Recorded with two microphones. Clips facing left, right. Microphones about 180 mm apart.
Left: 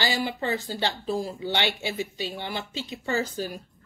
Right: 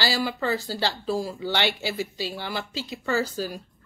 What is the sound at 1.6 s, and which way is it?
Speech, 40° right (ahead or behind).